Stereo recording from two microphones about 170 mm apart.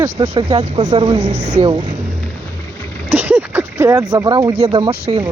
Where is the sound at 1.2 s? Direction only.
80° right.